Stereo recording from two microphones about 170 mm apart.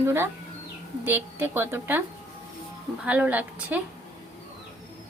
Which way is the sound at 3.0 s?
10° right (ahead or behind).